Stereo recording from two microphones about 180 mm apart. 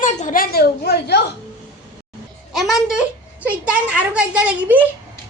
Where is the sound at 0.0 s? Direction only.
45° left (ahead or behind); by 1.2 s 65° left (ahead or behind).